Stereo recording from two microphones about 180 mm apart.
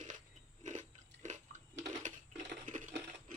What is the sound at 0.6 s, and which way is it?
Biting, 45° right (ahead or behind).